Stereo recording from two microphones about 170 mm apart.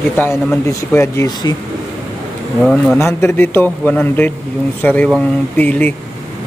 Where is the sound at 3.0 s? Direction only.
15° left (ahead or behind).